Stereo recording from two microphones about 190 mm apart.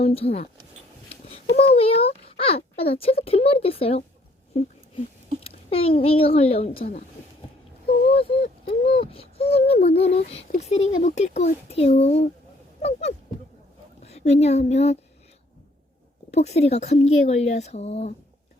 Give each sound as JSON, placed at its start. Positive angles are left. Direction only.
{"t": 0.0, "sound": "a child's voice", "side_deg": 30}
{"t": 1.5, "sound": "a child's voice", "side_deg": 60}
{"t": 1.7, "sound": "a child's voice", "side_deg": 30}
{"t": 5.4, "sound": "a child's voice", "side_deg": 30}
{"t": 8.4, "sound": "speech", "side_deg": 55}
{"t": 9.0, "sound": "a child's voice", "side_deg": 30}
{"t": 16.3, "sound": "a child's voice", "side_deg": 35}